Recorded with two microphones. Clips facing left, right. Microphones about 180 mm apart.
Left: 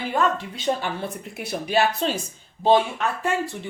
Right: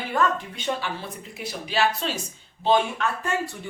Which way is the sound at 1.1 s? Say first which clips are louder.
Left 4 dB; 60° left (ahead or behind).